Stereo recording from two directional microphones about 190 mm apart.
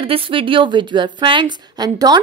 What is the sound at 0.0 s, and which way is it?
A woman's voice, 30° right (ahead or behind).